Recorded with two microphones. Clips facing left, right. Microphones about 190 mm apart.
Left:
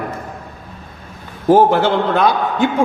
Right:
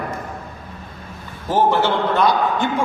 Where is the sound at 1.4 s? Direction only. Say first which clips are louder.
Left 6 dB; 50° left (ahead or behind).